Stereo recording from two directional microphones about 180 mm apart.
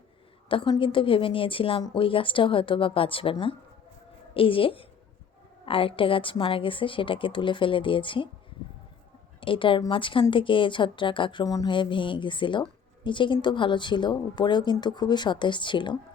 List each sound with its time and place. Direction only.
0.4 s speech: 30° left (ahead or behind)
9.4 s speech: 30° left (ahead or behind)